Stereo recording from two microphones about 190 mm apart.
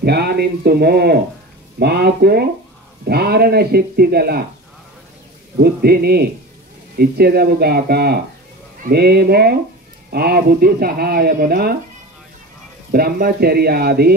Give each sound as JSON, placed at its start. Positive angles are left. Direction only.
{"t": 0.0, "sound": "speech", "side_deg": -60}
{"t": 5.6, "sound": "speech", "side_deg": -55}
{"t": 12.9, "sound": "speech", "side_deg": -50}